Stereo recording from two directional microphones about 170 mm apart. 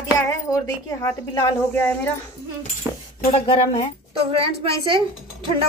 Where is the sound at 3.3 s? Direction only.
30° left (ahead or behind).